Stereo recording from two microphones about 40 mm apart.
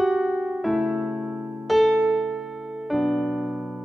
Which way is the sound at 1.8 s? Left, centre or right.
Right.